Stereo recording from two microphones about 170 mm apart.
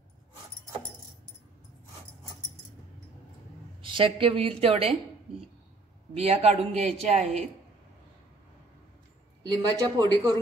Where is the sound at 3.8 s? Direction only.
30° right (ahead or behind).